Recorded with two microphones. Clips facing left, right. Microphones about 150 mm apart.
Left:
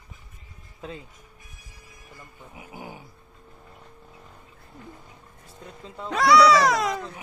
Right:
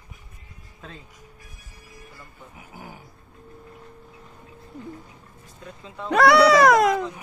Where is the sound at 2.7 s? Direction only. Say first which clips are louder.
Left 3 dB; 20° left (ahead or behind).